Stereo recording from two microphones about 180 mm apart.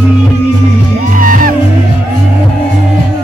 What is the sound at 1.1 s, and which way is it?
Music, 50° right (ahead or behind).